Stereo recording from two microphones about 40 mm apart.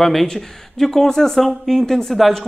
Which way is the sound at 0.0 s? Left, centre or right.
Centre.